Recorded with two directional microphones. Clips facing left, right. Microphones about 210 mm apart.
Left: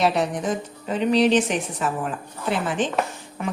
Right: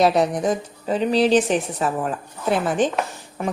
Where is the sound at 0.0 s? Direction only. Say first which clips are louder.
Right 4 dB; 40° right (ahead or behind).